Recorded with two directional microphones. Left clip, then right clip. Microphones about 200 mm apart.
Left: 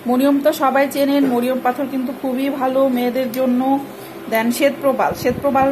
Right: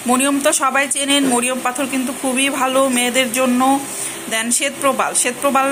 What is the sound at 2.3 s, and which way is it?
A woman's voice, 5° left (ahead or behind).